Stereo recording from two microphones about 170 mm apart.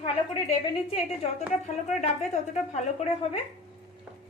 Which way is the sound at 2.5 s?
40° left (ahead or behind).